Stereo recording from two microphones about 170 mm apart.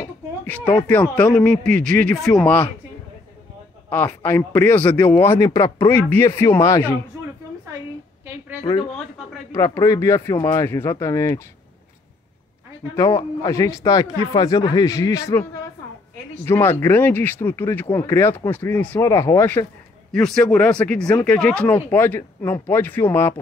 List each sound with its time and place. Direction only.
0.8 s speech: 10° left (ahead or behind)
3.9 s speech: 10° left (ahead or behind)
9.6 s speech: 15° left (ahead or behind)
12.9 s speech: 20° left (ahead or behind)
16.4 s speech: 15° left (ahead or behind)
20.1 s speech: 5° left (ahead or behind)